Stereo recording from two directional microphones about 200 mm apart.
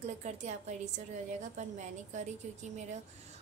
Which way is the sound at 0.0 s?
35° right (ahead or behind).